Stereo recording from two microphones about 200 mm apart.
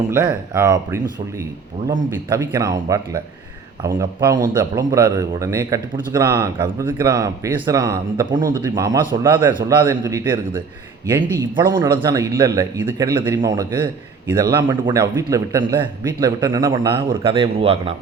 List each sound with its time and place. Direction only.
0.1 s a man's voice: 15° right (ahead or behind)
2.0 s a man's voice: 15° right (ahead or behind)
17.1 s speech: 25° right (ahead or behind)